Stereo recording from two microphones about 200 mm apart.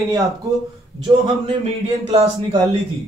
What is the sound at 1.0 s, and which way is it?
A man's voice, 30° right (ahead or behind).